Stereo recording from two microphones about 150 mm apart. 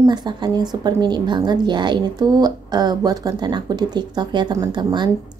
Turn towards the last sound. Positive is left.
turn(degrees=-30)  # may be behind; listen again after turning